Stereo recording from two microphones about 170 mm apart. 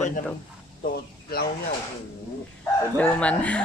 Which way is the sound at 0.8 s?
65° left (ahead or behind).